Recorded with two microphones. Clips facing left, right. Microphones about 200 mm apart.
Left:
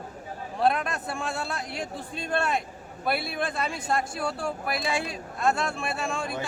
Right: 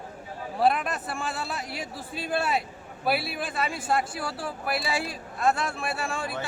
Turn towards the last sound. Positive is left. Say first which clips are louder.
# left 1 dB
turn(degrees=-5)  # may be behind; listen again after turning